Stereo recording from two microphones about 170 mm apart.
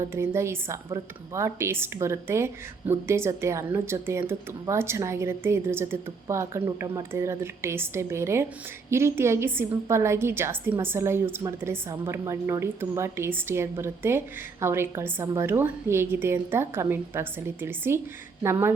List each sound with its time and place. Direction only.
0.0 s speech: 15° right (ahead or behind)